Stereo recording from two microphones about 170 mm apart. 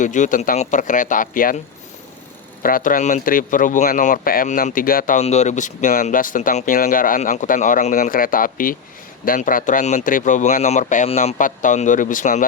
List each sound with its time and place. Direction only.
0.0 s speech: 45° left (ahead or behind)
2.6 s speech: 55° left (ahead or behind)
5.2 s speech: 40° left (ahead or behind)